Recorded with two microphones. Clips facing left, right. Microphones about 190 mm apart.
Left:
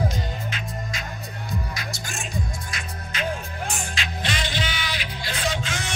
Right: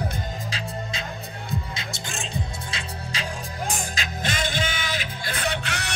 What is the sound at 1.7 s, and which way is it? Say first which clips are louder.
Music: left 1 dB; 25° right (ahead or behind).